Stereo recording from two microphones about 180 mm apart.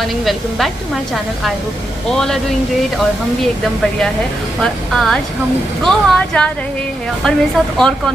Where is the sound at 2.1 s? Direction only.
Centre (ahead or behind).